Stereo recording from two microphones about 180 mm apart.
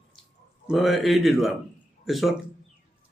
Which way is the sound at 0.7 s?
Centre (ahead or behind).